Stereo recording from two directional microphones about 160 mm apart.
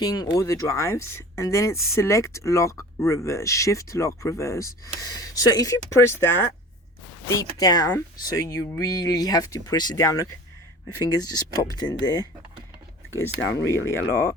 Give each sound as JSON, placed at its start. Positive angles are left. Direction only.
{"t": 0.0, "sound": "speech", "side_deg": 25}
{"t": 13.4, "sound": "speech", "side_deg": 90}
{"t": 13.7, "sound": "speech", "side_deg": 15}